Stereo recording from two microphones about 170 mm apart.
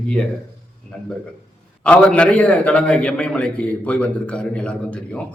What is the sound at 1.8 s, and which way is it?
A man's voice, 5° left (ahead or behind).